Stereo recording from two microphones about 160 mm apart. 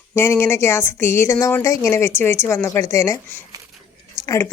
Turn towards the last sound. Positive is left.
turn(degrees=20)  # may be behind; listen again after turning